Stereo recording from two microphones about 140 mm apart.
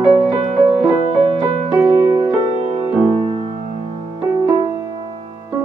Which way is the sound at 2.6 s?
45° right (ahead or behind).